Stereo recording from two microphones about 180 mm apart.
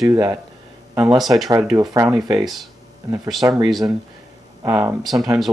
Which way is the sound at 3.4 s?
20° right (ahead or behind).